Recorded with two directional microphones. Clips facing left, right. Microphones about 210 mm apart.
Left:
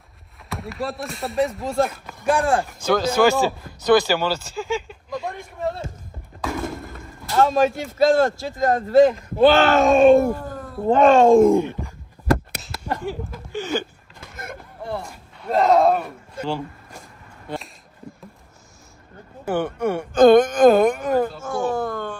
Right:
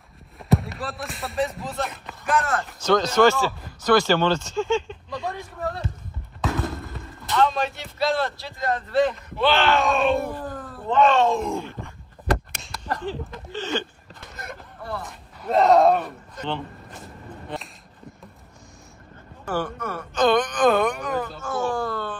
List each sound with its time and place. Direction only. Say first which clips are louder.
0.5 s speech: right 4 dB; centre (ahead or behind)
5.6 s speech: left 4 dB; 25° left (ahead or behind)
6.4 s fireworks: even; centre (ahead or behind)
7.3 s a man's voice: left 5 dB; 45° left (ahead or behind)
11.8 s a sound: left 4 dB; 5° left (ahead or behind)
15.0 s a sound: even; centre (ahead or behind)
19.5 s speech: left 6 dB; 25° left (ahead or behind)
20.2 s a man's voice: left 8 dB; 45° left (ahead or behind)
21.5 s speech: left 2 dB; centre (ahead or behind)
21.7 s a sound: left 2 dB; 15° left (ahead or behind)